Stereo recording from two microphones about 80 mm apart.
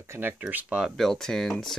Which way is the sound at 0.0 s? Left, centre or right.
Right.